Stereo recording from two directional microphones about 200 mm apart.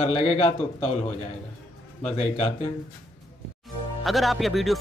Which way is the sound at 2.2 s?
30° left (ahead or behind).